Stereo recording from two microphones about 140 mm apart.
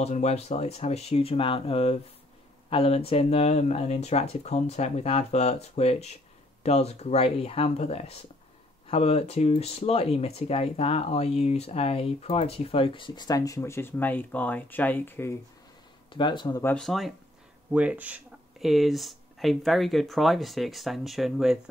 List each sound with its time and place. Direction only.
0.0 s speech: 50° left (ahead or behind); by 15.3 s 15° left (ahead or behind)
16.1 s speech: 35° left (ahead or behind)
16.6 s speech: 5° left (ahead or behind)
17.7 s speech: 10° right (ahead or behind)